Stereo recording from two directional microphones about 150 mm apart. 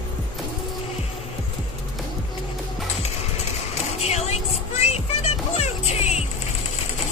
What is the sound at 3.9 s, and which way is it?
Music, 45° left (ahead or behind).